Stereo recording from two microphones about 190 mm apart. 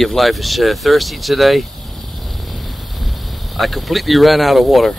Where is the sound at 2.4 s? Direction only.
Centre (ahead or behind).